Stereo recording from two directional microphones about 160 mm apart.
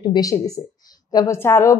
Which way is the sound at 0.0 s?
25° left (ahead or behind).